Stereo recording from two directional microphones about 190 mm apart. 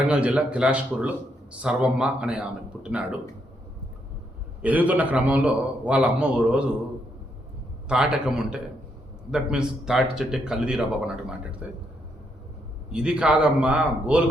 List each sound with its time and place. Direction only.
0.0 s a man's voice: 5° right (ahead or behind)
4.6 s a man's voice: 10° right (ahead or behind)
7.9 s speech: 5° right (ahead or behind)
12.9 s speech: 5° right (ahead or behind)